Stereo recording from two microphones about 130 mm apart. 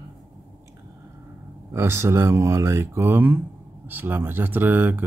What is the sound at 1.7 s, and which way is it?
Speech, 20° right (ahead or behind).